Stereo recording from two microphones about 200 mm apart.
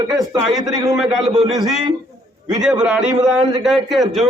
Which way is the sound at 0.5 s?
20° right (ahead or behind).